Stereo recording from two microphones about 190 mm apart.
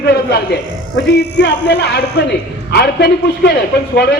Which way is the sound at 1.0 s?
60° left (ahead or behind).